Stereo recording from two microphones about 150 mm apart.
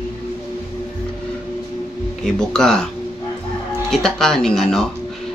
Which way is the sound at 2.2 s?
5° left (ahead or behind).